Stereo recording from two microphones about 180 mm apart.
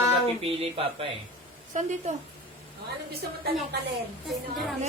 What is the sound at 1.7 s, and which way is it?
Speech, 40° right (ahead or behind).